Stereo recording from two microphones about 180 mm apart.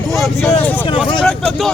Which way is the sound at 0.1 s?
Centre (ahead or behind).